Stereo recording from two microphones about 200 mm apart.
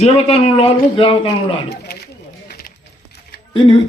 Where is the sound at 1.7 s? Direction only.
55° left (ahead or behind).